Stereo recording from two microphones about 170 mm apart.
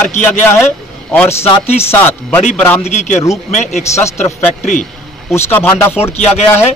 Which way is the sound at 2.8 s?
40° left (ahead or behind).